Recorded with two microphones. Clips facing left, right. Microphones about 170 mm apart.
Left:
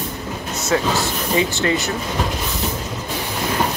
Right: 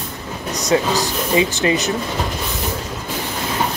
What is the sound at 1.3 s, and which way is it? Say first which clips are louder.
Speech: right 2 dB; 15° right (ahead or behind).